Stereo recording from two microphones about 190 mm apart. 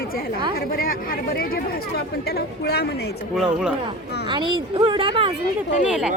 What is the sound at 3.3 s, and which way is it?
Speech, centre (ahead or behind).